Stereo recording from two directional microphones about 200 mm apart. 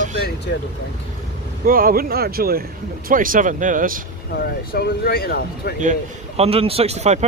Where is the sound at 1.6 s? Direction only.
45° right (ahead or behind).